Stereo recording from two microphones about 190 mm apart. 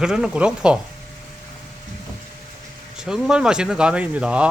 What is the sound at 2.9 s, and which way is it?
Speech, 5° right (ahead or behind).